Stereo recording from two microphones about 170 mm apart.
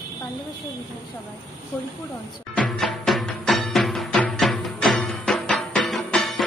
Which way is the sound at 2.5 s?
Centre (ahead or behind).